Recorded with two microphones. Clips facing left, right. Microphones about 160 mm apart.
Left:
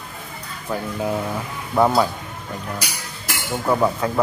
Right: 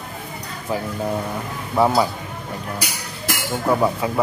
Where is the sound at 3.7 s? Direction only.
10° right (ahead or behind).